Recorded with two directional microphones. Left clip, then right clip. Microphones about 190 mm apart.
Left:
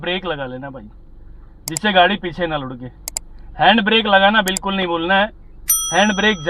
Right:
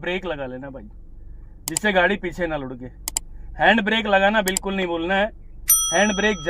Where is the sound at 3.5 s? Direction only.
20° right (ahead or behind).